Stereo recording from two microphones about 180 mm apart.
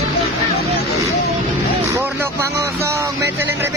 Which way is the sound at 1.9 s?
15° right (ahead or behind).